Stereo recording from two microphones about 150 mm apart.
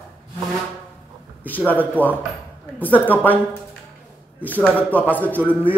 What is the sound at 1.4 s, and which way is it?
A man's voice, 10° left (ahead or behind).